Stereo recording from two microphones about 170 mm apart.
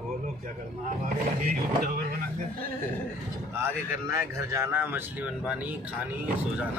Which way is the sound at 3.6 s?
15° right (ahead or behind).